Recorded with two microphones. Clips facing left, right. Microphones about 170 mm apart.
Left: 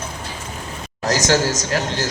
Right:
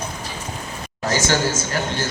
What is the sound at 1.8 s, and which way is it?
Speech, 90° left.